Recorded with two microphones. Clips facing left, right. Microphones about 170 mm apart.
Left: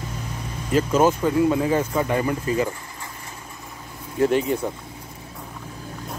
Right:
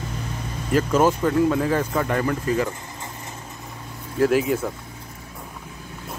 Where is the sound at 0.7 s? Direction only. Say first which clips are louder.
Even; 15° left (ahead or behind).